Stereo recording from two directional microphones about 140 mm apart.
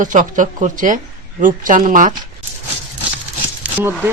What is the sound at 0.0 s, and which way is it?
Speech, 65° right (ahead or behind).